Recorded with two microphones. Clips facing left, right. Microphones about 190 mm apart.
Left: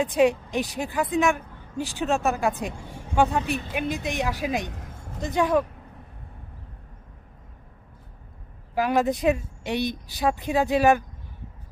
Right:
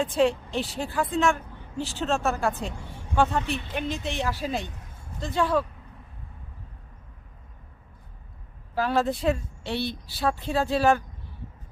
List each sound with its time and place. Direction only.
0.0 s a woman's voice: 15° left (ahead or behind)
8.7 s a woman's voice: 15° left (ahead or behind)